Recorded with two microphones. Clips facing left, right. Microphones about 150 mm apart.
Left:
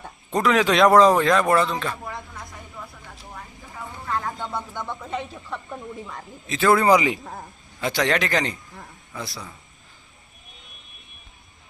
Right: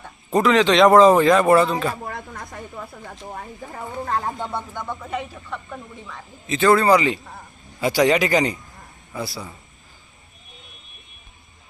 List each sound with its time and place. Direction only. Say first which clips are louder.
0.3 s speech: right 3 dB; centre (ahead or behind)
2.0 s a sound: right 3 dB; 50° right (ahead or behind)
4.5 s speech: right 2 dB; 5° right (ahead or behind)
6.5 s speech: right 2 dB; centre (ahead or behind)
6.7 s a man's voice: right 1 dB; 15° left (ahead or behind)
7.8 s a man's voice: right 5 dB; 5° right (ahead or behind)